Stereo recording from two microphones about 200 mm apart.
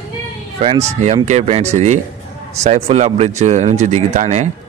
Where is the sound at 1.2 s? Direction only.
35° right (ahead or behind).